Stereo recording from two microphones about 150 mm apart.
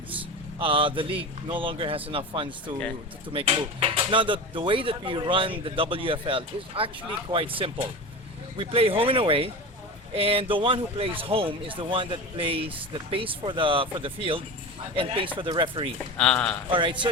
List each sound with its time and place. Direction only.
0.6 s speech: 35° right (ahead or behind)
16.1 s a man's voice: 5° left (ahead or behind)
16.7 s speech: 35° right (ahead or behind)